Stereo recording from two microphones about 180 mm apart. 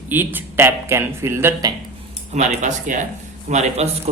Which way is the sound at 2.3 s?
40° right (ahead or behind).